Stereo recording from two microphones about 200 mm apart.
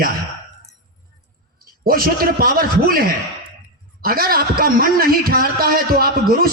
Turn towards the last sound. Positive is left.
turn(degrees=-50)  # may be behind; listen again after turning